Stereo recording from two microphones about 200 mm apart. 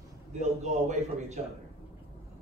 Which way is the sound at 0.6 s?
35° right (ahead or behind).